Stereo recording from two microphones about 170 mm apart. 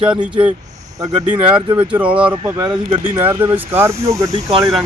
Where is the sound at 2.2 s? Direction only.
25° right (ahead or behind).